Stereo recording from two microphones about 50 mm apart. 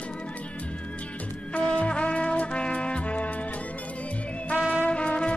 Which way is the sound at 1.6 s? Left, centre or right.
Left.